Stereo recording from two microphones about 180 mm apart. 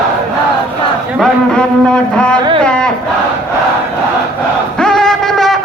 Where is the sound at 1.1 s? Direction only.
5° left (ahead or behind).